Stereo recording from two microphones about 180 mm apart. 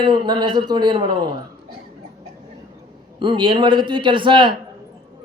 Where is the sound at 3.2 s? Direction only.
25° right (ahead or behind).